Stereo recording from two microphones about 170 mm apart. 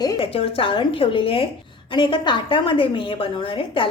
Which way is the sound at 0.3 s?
35° left (ahead or behind).